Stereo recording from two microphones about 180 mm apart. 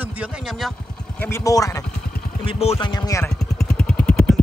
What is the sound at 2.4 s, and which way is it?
Speech, 30° left (ahead or behind).